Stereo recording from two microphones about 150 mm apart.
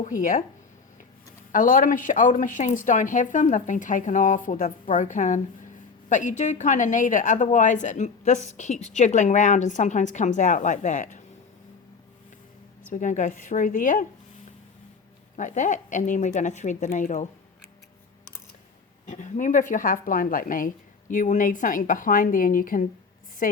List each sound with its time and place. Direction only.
0.0 s a woman's voice: 60° left (ahead or behind)
1.5 s a woman's voice: 65° left (ahead or behind)
12.9 s a woman's voice: 55° left (ahead or behind)
15.4 s a woman's voice: 55° left (ahead or behind)
19.0 s a woman's voice: 55° left (ahead or behind)